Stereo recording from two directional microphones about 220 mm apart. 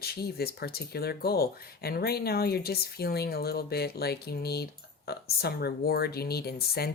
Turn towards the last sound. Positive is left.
turn(degrees=45)  # may be behind; listen again after turning